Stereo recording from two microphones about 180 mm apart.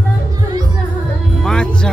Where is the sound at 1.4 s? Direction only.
5° left (ahead or behind).